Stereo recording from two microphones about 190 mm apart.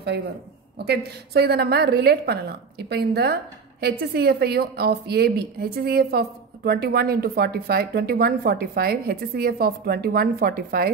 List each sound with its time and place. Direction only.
0.8 s a woman's voice: 55° right (ahead or behind)